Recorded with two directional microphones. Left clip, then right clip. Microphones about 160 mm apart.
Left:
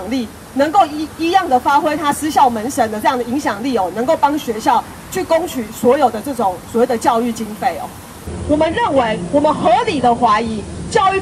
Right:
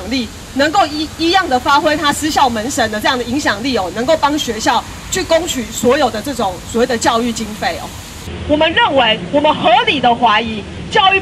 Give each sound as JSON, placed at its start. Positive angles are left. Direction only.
{"t": 0.1, "sound": "speech", "side_deg": 25}